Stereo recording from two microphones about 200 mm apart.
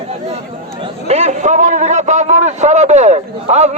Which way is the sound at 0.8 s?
30° right (ahead or behind).